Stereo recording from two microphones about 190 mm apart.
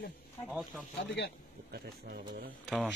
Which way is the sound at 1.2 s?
65° left (ahead or behind).